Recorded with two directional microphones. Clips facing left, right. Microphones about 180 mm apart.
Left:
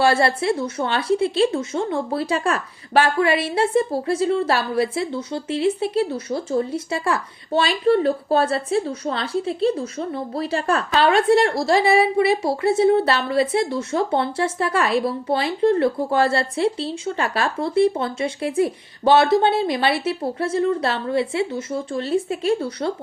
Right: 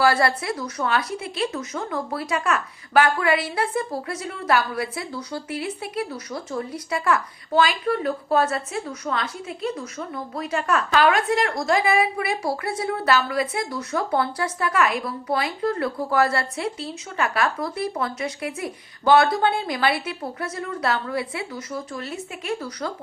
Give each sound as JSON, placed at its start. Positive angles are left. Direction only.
{"t": 0.0, "sound": "a woman's voice", "side_deg": 25}